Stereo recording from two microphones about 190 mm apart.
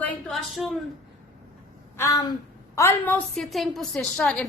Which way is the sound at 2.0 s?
20° left (ahead or behind).